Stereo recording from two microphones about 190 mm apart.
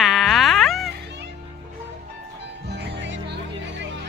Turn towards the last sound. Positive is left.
turn(degrees=-60)  # may be behind; listen again after turning